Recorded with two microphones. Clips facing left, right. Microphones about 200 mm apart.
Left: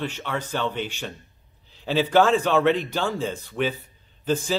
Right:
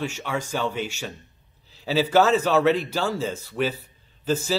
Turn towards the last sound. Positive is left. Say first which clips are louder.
# even
turn(degrees=-5)  # may be behind; listen again after turning